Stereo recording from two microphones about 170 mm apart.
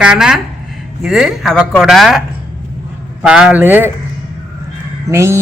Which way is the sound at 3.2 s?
5° right (ahead or behind).